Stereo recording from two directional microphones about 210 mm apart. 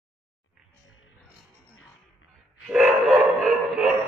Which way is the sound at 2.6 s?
Centre (ahead or behind).